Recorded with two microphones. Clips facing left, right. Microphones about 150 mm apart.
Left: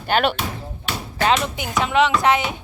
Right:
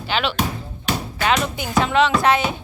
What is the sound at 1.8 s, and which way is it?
Speech, 15° left (ahead or behind).